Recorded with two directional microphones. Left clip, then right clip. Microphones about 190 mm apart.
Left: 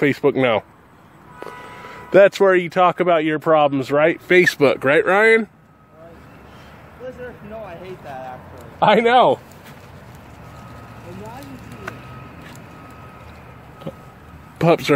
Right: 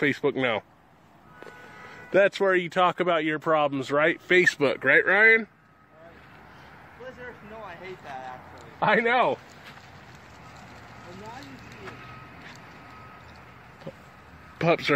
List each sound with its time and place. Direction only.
0.0 s speech: centre (ahead or behind)
2.0 s speech: 5° left (ahead or behind)
8.7 s speech: 5° left (ahead or behind)
11.1 s a sound: 60° left (ahead or behind)
13.9 s a sound: 5° left (ahead or behind)
14.6 s speech: 5° left (ahead or behind)